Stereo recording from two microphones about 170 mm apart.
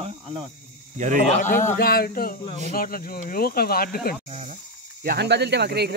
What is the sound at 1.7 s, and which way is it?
Speech, 65° left (ahead or behind).